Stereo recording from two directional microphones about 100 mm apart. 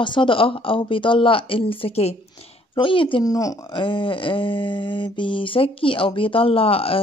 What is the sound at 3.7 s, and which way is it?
Mantra, 55° left (ahead or behind).